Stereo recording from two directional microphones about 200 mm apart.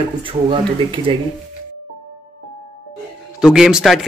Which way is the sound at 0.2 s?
25° right (ahead or behind).